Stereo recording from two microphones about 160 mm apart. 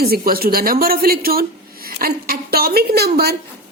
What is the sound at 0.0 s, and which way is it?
A woman's voice, 70° right (ahead or behind).